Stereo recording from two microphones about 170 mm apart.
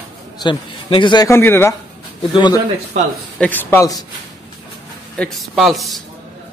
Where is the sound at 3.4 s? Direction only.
10° left (ahead or behind).